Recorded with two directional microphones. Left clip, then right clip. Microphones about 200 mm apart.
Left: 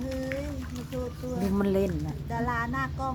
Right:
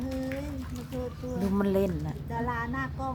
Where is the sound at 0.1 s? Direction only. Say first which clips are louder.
Left 2 dB; 25° right (ahead or behind).